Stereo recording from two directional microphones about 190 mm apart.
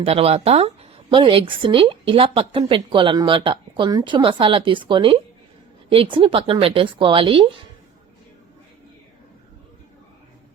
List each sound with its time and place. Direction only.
0.0 s a woman's voice: 30° right (ahead or behind)